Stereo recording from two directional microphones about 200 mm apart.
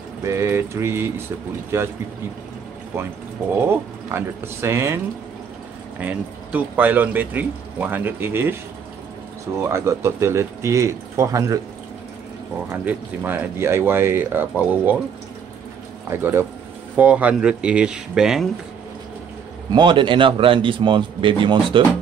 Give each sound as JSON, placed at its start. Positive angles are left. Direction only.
{"t": 0.2, "sound": "speech", "side_deg": -15}
{"t": 3.5, "sound": "speech", "side_deg": -10}
{"t": 9.6, "sound": "speech", "side_deg": -15}
{"t": 12.8, "sound": "speech", "side_deg": -10}
{"t": 16.1, "sound": "speech", "side_deg": -10}
{"t": 19.7, "sound": "a man's voice", "side_deg": -25}